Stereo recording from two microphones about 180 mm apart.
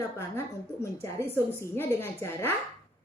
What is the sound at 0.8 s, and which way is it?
A child's voice, 15° left (ahead or behind).